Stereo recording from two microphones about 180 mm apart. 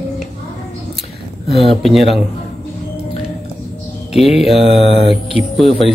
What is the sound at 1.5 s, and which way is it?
Speech, centre (ahead or behind).